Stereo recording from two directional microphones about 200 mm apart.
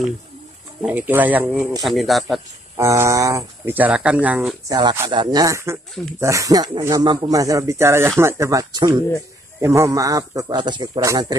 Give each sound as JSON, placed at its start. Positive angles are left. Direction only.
{"t": 0.8, "sound": "speech", "side_deg": -10}
{"t": 2.8, "sound": "speech", "side_deg": -15}
{"t": 4.6, "sound": "speech", "side_deg": -20}